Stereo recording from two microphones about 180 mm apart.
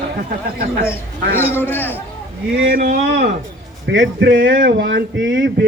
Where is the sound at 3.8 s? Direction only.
90° right.